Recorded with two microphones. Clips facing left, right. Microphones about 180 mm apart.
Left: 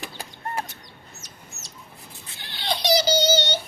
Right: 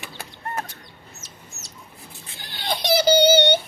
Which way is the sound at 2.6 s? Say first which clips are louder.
Right 1 dB; 50° right (ahead or behind).